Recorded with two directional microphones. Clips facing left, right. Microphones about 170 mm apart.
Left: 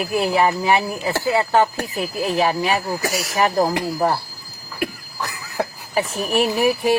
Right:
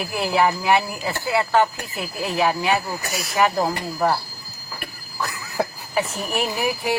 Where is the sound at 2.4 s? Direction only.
40° left (ahead or behind).